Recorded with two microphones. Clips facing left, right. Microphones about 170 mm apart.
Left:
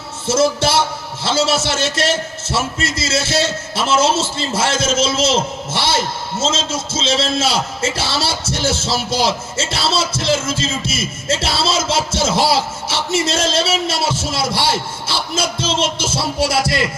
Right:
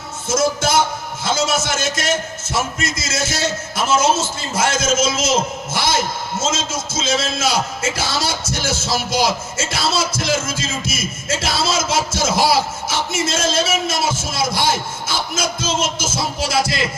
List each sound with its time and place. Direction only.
0.3 s a man's voice: 30° left (ahead or behind)